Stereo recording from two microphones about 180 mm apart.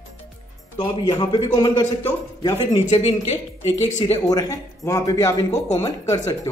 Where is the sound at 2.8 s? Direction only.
40° left (ahead or behind).